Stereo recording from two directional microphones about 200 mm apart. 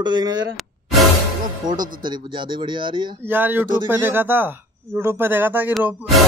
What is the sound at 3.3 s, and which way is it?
Speech, 10° right (ahead or behind).